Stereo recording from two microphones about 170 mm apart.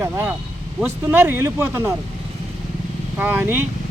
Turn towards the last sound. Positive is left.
turn(degrees=-10)  # may be behind; listen again after turning